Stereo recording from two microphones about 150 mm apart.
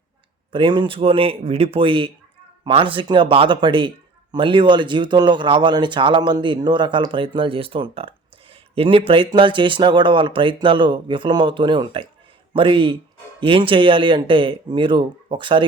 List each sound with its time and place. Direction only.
0.5 s a man's voice: 30° right (ahead or behind)